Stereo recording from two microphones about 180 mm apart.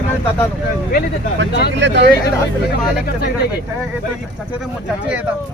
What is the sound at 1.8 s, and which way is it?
Speech, 80° right.